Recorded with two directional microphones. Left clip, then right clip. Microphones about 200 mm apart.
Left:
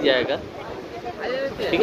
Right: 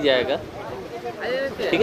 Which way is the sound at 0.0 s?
10° right (ahead or behind).